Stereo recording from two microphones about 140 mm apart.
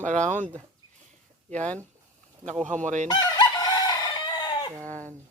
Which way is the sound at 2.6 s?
60° right (ahead or behind).